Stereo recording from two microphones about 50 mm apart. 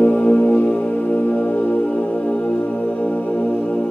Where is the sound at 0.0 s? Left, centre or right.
Left.